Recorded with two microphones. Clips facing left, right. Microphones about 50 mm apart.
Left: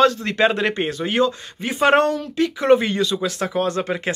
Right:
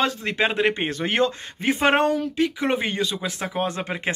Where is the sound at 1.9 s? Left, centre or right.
Centre.